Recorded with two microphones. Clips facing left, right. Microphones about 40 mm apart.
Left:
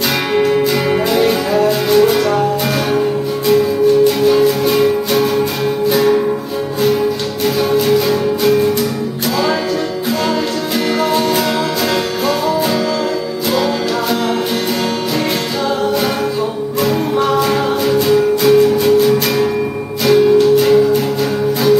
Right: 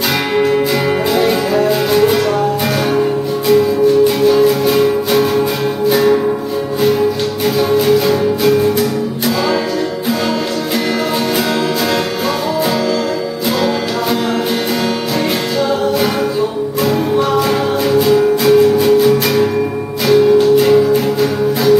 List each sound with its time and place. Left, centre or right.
0.4 s music: centre
16.8 s music: centre